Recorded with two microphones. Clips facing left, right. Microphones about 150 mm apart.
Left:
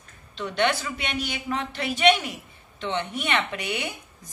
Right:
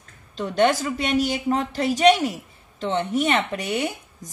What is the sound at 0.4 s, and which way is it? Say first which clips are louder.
A woman's voice: right 5 dB; 40° right (ahead or behind).